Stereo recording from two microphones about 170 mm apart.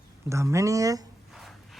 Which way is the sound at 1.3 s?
Centre (ahead or behind).